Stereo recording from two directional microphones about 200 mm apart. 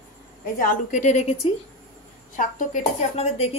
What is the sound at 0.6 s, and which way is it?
Speech, 40° left (ahead or behind).